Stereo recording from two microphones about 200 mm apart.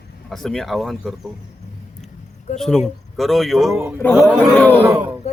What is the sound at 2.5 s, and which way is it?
A man's voice, centre (ahead or behind).